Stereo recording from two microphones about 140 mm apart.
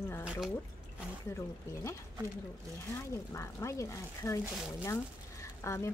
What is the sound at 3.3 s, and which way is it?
Speech, 20° left (ahead or behind).